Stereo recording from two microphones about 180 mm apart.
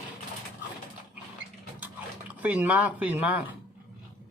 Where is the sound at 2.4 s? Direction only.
10° right (ahead or behind).